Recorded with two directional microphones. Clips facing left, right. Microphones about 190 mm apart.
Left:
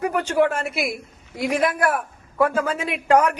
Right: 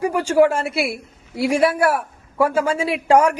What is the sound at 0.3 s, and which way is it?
Speech, 30° right (ahead or behind).